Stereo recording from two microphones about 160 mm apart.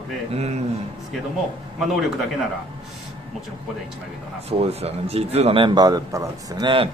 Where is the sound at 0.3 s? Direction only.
40° right (ahead or behind).